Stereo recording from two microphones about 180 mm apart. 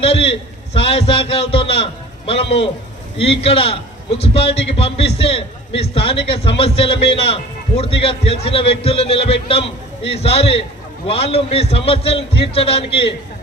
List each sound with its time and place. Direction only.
0.0 s a man's voice: 30° left (ahead or behind)